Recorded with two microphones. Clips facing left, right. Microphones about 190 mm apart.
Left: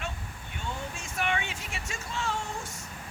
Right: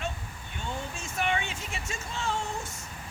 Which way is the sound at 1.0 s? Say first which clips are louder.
Right 2 dB; 25° right (ahead or behind).